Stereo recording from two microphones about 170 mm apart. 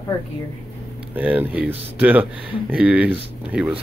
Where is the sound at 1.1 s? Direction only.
10° right (ahead or behind).